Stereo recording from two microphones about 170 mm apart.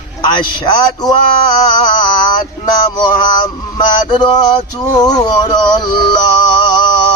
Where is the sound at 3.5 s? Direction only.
25° left (ahead or behind).